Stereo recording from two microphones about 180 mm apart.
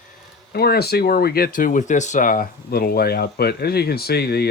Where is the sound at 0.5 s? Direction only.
60° left (ahead or behind).